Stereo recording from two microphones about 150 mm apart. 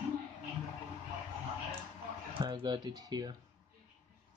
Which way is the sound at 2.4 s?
30° right (ahead or behind).